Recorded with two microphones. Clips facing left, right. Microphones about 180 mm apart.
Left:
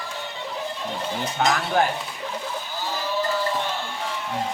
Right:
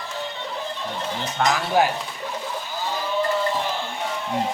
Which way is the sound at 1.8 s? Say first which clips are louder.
Right 3 dB; 5° right (ahead or behind).